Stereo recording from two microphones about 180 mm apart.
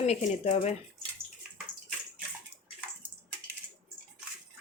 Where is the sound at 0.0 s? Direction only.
40° left (ahead or behind).